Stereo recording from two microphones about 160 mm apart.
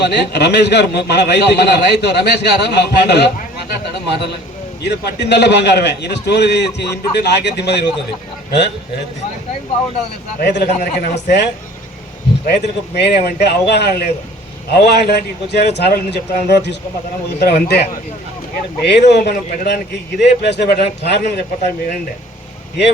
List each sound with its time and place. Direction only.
0.0 s a man's voice: 90° left
10.4 s a man's voice: 90° left
12.5 s a man's voice: 85° left